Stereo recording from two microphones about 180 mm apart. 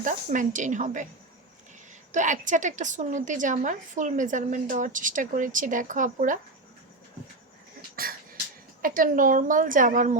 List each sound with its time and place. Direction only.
0.0 s a woman's voice: 45° right (ahead or behind)
2.1 s a woman's voice: 45° right (ahead or behind)
8.0 s beatboxing: 55° right (ahead or behind)
8.8 s a woman's voice: 50° right (ahead or behind)